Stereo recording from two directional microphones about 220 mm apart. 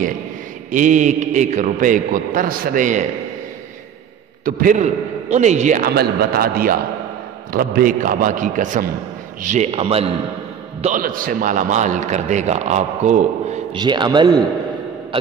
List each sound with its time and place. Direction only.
0.7 s a man's voice: 35° right (ahead or behind)
4.5 s a man's voice: 40° right (ahead or behind)
13.7 s a man's voice: 20° right (ahead or behind)